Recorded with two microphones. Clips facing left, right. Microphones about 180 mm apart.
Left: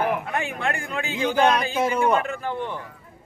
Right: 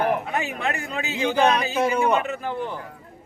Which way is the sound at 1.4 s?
5° right (ahead or behind).